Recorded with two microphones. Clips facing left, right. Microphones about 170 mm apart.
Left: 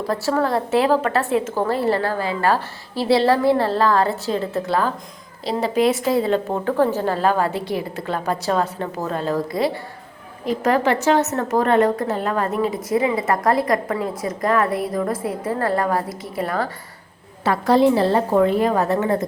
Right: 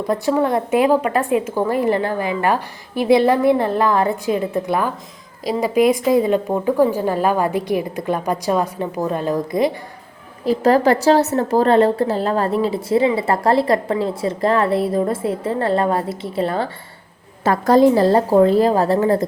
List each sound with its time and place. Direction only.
0.1 s a woman's voice: 20° right (ahead or behind)
10.4 s a woman's voice: 35° right (ahead or behind)
17.4 s a woman's voice: 45° right (ahead or behind)